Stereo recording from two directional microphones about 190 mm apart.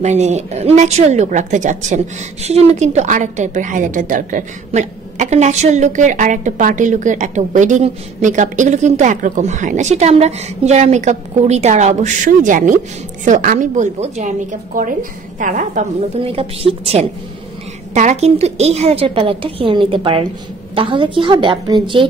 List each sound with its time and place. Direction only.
0.0 s a woman's voice: 35° right (ahead or behind)
16.3 s a woman's voice: 30° right (ahead or behind)